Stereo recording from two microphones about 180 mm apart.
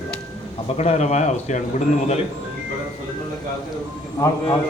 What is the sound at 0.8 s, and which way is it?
Speech, 40° left (ahead or behind).